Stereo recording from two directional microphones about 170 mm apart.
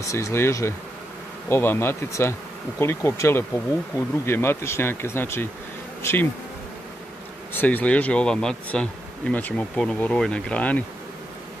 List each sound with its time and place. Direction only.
0.0 s speech: 15° left (ahead or behind)
7.5 s speech: 10° left (ahead or behind)